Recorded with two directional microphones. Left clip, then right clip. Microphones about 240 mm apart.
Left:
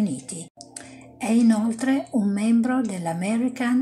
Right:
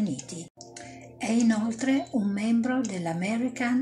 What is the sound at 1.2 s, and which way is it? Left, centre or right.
Speech, left.